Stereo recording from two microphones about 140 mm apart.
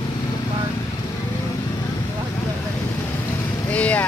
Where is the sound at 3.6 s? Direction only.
10° left (ahead or behind).